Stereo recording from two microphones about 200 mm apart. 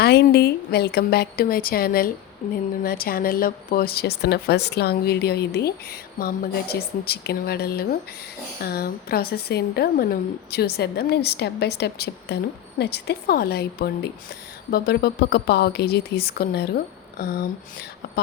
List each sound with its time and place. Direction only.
0.0 s speech: 55° left (ahead or behind)
2.4 s speech: 35° left (ahead or behind)
2.8 s speech: 50° left (ahead or behind)